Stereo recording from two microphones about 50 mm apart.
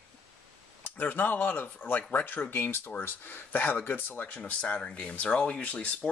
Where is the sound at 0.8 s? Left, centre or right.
Left.